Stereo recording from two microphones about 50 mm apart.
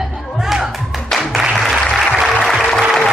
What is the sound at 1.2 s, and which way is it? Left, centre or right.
Applause, centre.